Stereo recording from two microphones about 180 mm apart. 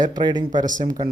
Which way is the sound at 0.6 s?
45° right (ahead or behind).